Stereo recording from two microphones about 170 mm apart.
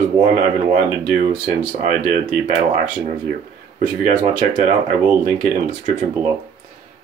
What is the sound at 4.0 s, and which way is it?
Speech, 50° right (ahead or behind).